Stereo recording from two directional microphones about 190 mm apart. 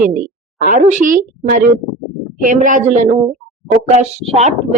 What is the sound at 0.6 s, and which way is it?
A woman's voice, 40° right (ahead or behind).